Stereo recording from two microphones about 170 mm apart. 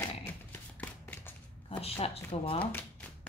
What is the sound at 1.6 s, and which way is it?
Speech, 35° left (ahead or behind).